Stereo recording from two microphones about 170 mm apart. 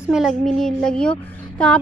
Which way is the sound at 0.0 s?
5° right (ahead or behind).